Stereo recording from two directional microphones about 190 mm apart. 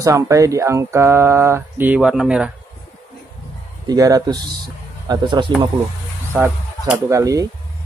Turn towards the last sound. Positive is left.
turn(degrees=-15)  # may be behind; listen again after turning